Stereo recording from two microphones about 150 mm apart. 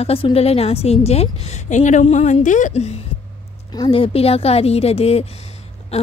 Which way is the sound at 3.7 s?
35° left (ahead or behind).